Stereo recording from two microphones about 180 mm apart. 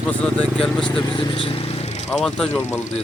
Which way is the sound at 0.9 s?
30° left (ahead or behind).